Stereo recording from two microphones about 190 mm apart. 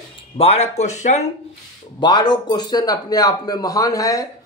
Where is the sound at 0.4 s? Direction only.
35° left (ahead or behind).